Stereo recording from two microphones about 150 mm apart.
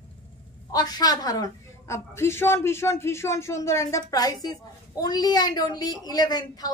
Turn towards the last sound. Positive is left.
turn(degrees=25)  # may be behind; listen again after turning